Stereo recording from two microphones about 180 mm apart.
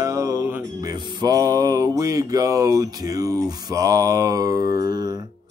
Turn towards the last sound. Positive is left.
turn(degrees=-20)  # may be behind; listen again after turning